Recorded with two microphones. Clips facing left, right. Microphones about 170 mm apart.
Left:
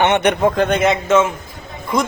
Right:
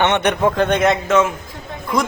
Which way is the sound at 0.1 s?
45° left (ahead or behind).